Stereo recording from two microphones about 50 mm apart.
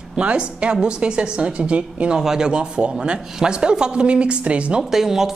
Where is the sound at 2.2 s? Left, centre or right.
Centre.